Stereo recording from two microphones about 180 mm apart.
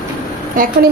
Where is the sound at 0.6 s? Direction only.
50° right (ahead or behind).